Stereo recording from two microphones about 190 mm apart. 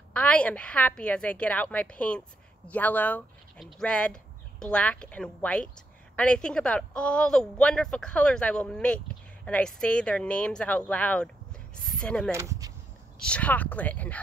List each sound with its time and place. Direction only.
0.1 s a woman's voice: 5° left (ahead or behind)
12.3 s speech: 15° right (ahead or behind)
13.2 s a woman's voice: 5° left (ahead or behind)